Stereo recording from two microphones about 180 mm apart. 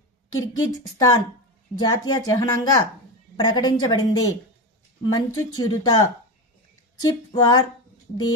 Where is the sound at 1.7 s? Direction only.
20° left (ahead or behind).